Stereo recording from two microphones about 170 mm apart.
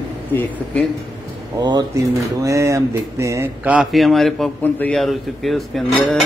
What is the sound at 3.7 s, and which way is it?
A man's voice, centre (ahead or behind).